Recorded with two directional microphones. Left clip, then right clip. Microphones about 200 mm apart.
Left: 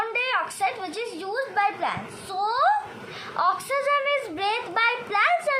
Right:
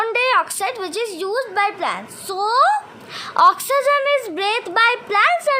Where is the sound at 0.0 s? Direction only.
55° right (ahead or behind).